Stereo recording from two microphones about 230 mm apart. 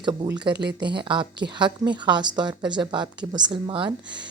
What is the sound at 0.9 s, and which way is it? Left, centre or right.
A woman's voice, right.